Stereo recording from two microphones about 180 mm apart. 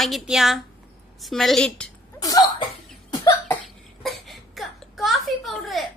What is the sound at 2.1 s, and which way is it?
Cough, 20° left (ahead or behind).